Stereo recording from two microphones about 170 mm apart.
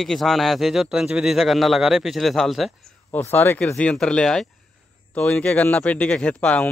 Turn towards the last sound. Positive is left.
turn(degrees=5)  # may be behind; listen again after turning